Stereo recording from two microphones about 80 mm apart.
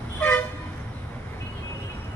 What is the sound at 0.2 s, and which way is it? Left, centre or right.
Vehicle, left.